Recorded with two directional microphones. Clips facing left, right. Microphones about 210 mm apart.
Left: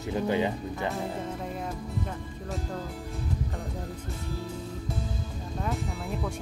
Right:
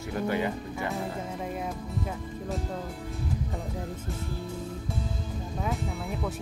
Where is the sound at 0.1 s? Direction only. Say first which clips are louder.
Left 2 dB; 20° left (ahead or behind).